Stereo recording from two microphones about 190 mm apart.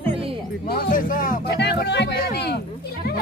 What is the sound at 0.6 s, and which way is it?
A man's voice, 50° left (ahead or behind).